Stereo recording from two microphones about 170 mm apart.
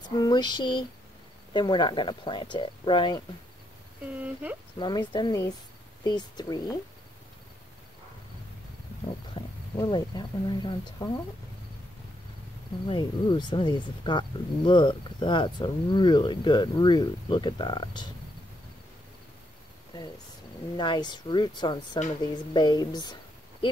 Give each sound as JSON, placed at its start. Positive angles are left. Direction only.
{"t": 0.1, "sound": "speech", "side_deg": 25}
{"t": 4.2, "sound": "speech", "side_deg": -10}
{"t": 4.7, "sound": "speech", "side_deg": 25}
{"t": 9.3, "sound": "speech", "side_deg": 25}
{"t": 12.8, "sound": "speech", "side_deg": 30}
{"t": 20.7, "sound": "speech", "side_deg": 25}